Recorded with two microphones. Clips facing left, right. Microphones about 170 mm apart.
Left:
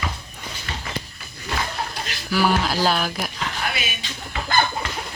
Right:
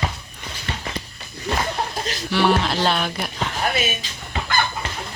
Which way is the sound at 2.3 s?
Centre (ahead or behind).